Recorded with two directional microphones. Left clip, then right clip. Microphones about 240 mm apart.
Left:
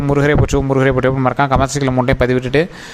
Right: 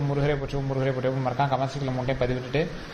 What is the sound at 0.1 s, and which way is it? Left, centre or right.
Speech, left.